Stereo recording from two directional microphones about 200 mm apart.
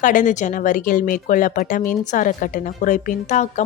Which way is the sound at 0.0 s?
40° left (ahead or behind).